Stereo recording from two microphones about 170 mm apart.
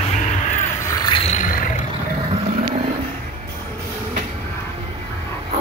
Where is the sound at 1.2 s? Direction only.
45° left (ahead or behind).